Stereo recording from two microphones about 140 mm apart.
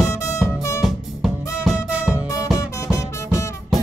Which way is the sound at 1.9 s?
10° right (ahead or behind).